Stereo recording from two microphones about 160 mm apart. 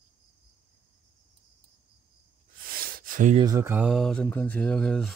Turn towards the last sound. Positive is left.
turn(degrees=5)  # may be behind; listen again after turning